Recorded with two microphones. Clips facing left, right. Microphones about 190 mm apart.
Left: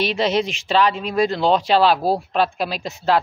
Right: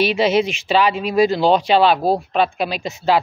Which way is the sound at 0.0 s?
5° right (ahead or behind).